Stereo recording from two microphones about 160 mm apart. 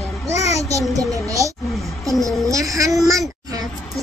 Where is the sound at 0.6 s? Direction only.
20° right (ahead or behind).